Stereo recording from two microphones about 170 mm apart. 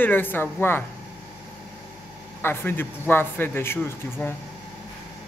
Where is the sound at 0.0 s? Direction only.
10° left (ahead or behind).